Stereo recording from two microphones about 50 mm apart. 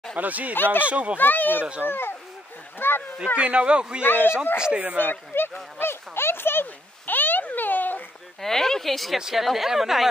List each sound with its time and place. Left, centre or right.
0.1 s speech: right
1.1 s speech: left
1.6 s speech: right
1.9 s speech: left
3.3 s speech: right
4.0 s speech: left
4.6 s speech: right
5.0 s a sound: left
8.4 s speech: centre